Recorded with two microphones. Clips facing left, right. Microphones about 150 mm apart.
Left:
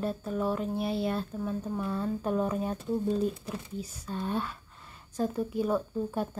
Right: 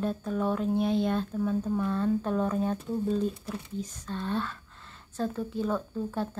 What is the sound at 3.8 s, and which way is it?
A woman's voice, 10° left (ahead or behind).